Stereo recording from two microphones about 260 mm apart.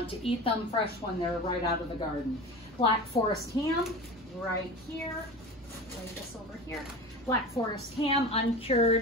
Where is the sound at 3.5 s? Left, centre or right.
Centre.